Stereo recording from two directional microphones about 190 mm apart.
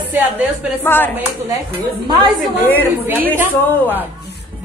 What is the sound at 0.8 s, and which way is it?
Speech, 10° left (ahead or behind).